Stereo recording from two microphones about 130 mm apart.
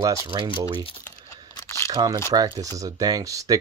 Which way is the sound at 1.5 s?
20° left (ahead or behind).